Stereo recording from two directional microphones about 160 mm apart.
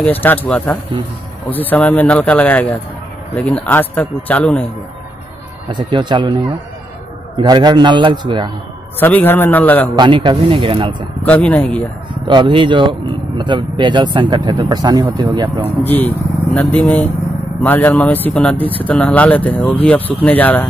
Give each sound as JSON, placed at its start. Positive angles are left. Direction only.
{"t": 0.0, "sound": "speech", "side_deg": 10}
{"t": 5.7, "sound": "speech", "side_deg": -30}
{"t": 7.3, "sound": "speech", "side_deg": -30}
{"t": 9.0, "sound": "speech", "side_deg": 10}
{"t": 9.9, "sound": "speech", "side_deg": -30}
{"t": 11.2, "sound": "speech", "side_deg": 10}
{"t": 12.1, "sound": "speech", "side_deg": -30}
{"t": 15.8, "sound": "speech", "side_deg": 10}